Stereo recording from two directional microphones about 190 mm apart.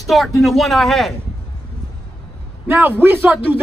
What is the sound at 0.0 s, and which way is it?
Speech, centre (ahead or behind).